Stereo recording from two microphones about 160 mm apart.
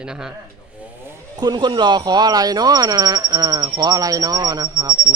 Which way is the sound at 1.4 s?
25° right (ahead or behind).